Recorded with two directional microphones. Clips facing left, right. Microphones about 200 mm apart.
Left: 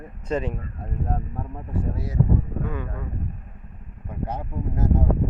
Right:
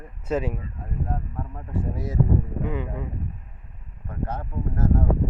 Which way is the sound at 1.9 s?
20° right (ahead or behind).